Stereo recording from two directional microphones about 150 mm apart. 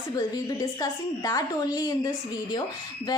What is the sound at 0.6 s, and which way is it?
A woman's voice, 25° left (ahead or behind).